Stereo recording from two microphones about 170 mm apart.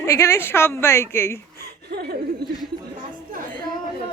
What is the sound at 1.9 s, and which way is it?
Speech, 70° right (ahead or behind).